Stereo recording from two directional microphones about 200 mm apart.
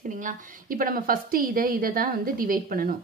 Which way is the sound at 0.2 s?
45° right (ahead or behind).